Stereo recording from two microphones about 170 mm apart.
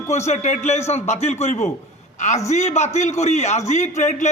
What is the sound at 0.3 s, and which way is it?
A man's voice, 40° left (ahead or behind).